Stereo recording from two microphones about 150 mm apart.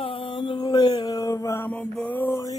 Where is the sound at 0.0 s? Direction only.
30° left (ahead or behind); by 2.4 s 15° left (ahead or behind).